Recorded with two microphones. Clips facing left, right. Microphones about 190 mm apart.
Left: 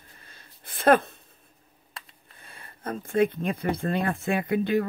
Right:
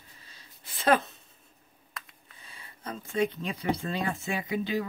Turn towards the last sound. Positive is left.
turn(degrees=55)  # may be behind; listen again after turning